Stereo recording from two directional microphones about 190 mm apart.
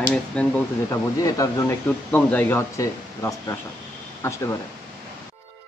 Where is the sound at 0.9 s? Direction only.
15° left (ahead or behind).